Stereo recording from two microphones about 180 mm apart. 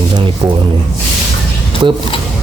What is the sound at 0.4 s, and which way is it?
Speech, 15° right (ahead or behind).